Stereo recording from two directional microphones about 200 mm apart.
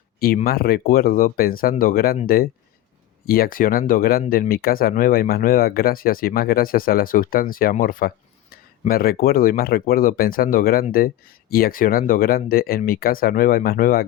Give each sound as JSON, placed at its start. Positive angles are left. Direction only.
{"t": 0.4, "sound": "speech", "side_deg": 50}